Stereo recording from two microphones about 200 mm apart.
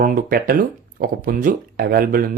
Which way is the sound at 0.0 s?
45° right (ahead or behind).